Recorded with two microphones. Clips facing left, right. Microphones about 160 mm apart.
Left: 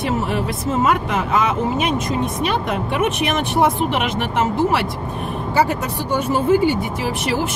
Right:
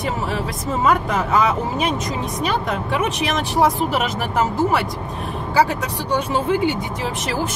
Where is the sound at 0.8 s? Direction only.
Centre (ahead or behind).